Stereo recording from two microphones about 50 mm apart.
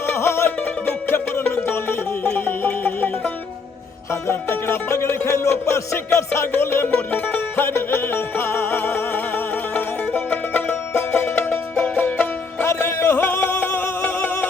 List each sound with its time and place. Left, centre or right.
0.0 s music: left
1.6 s music: left
4.1 s music: left
5.2 s music: left
7.1 s music: left
7.6 s music: left
12.6 s music: left
14.0 s a sound: left